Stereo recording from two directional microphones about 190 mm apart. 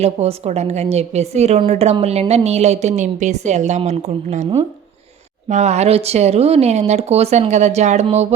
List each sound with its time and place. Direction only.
0.0 s a woman's voice: 35° right (ahead or behind)